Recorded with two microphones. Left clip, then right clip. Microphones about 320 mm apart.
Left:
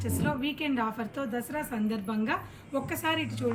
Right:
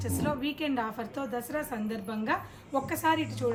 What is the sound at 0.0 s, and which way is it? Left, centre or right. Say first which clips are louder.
A woman's voice: even; centre.